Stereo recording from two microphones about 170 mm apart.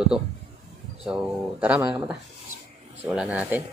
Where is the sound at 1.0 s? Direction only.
5° right (ahead or behind).